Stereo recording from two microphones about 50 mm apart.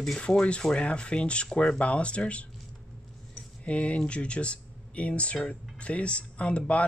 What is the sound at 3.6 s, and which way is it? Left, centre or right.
Speech, left.